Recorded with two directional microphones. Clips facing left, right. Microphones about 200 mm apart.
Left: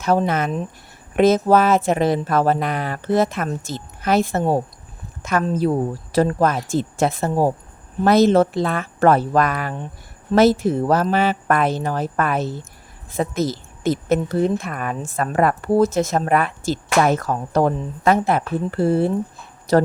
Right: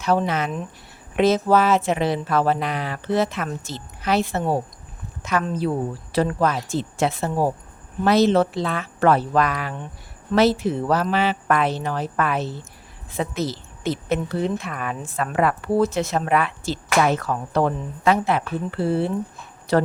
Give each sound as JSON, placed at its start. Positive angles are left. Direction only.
{"t": 0.0, "sound": "a woman's voice", "side_deg": 45}